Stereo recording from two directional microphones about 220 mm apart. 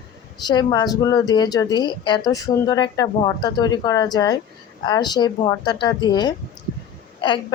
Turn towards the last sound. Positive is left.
turn(degrees=20)  # may be behind; listen again after turning